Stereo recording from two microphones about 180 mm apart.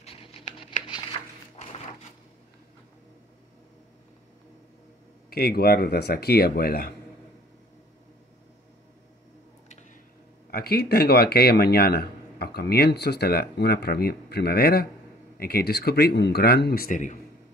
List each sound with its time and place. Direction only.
0.0 s a sound: 30° left (ahead or behind)
5.3 s a man's voice: 60° left (ahead or behind)
10.5 s a man's voice: 60° left (ahead or behind); by 17.2 s 45° left (ahead or behind)